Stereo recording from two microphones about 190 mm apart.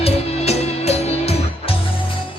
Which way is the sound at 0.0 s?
35° left (ahead or behind).